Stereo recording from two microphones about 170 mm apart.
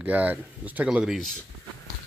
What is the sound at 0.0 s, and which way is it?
Speech, 10° right (ahead or behind).